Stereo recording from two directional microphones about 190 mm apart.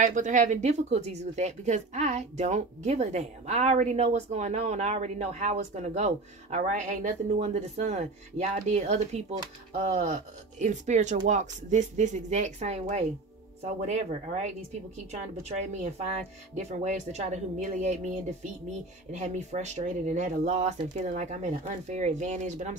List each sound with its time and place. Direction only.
0.0 s speech: 40° right (ahead or behind)